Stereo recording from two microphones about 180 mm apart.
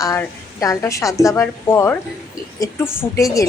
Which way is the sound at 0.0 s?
15° left (ahead or behind).